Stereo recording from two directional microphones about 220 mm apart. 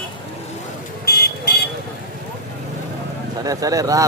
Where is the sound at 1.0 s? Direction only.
45° left (ahead or behind).